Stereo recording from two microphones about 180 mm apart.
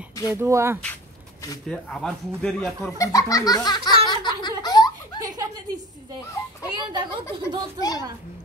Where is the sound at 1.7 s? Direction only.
5° left (ahead or behind).